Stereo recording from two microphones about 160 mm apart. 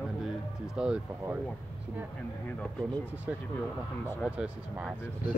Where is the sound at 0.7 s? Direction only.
5° right (ahead or behind).